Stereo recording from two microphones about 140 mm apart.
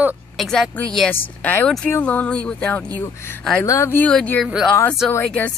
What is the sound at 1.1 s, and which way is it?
Speech, 15° left (ahead or behind).